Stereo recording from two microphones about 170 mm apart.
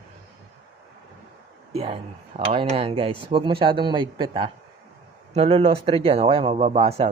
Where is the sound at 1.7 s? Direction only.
35° right (ahead or behind).